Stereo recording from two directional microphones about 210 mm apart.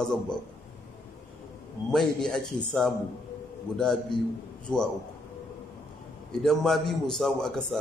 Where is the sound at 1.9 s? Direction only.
5° left (ahead or behind).